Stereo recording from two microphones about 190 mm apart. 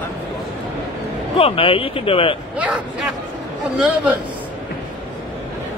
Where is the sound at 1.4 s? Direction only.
30° left (ahead or behind).